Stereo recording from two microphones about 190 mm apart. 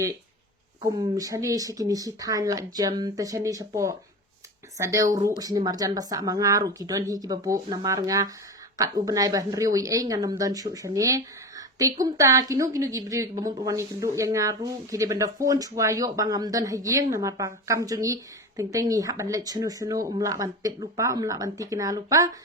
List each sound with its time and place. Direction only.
0.8 s speech: 20° right (ahead or behind)